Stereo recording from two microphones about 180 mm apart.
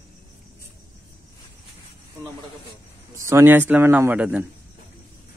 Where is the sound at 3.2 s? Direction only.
15° right (ahead or behind).